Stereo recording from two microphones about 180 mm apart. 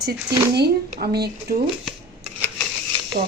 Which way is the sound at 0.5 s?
60° right (ahead or behind).